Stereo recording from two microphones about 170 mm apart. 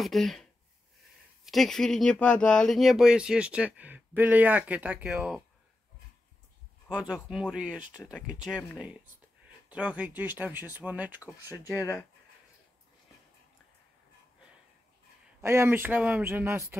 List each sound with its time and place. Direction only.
0.0 s speech: centre (ahead or behind)
7.0 s speech: 5° right (ahead or behind)
9.7 s speech: 10° right (ahead or behind)
11.4 s speech: 20° left (ahead or behind)
15.4 s speech: 15° right (ahead or behind)